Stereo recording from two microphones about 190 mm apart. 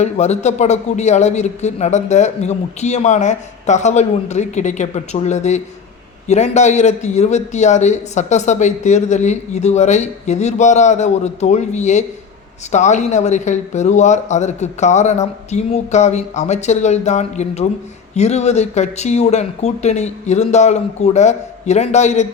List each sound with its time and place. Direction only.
0.0 s a man's voice: 35° left (ahead or behind)